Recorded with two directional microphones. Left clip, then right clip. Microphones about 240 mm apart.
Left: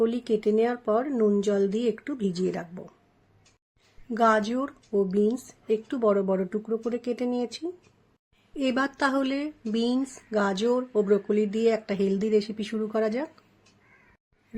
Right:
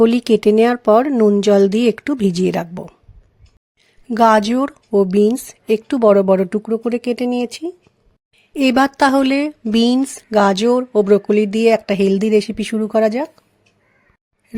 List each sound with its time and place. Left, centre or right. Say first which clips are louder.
0.0 s speech: right 12 dB; right
4.1 s speech: right 10 dB; right